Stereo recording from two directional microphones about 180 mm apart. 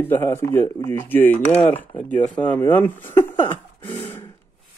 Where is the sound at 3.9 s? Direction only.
25° left (ahead or behind).